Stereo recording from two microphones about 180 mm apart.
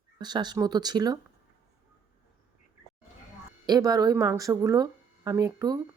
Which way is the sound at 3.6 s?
20° right (ahead or behind).